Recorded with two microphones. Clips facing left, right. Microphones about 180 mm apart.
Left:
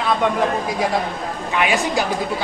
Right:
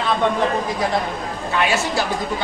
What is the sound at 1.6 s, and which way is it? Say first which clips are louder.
Speech: left 1 dB; 15° left (ahead or behind).